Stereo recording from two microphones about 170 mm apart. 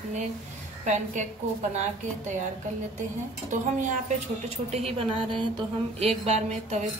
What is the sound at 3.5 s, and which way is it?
Speech, 50° right (ahead or behind).